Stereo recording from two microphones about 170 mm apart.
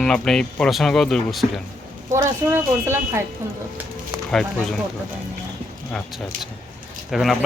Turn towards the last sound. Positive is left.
turn(degrees=0)  # may be behind; listen again after turning